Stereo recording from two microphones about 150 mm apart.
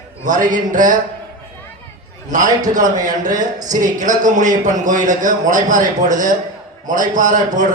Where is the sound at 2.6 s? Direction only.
55° right (ahead or behind).